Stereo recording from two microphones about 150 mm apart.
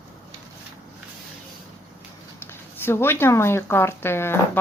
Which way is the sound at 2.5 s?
15° left (ahead or behind).